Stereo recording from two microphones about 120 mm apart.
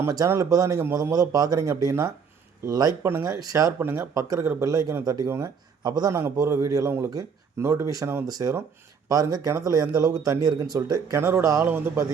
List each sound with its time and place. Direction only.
0.0 s speech: 25° right (ahead or behind)
3.8 s speech: 20° right (ahead or behind)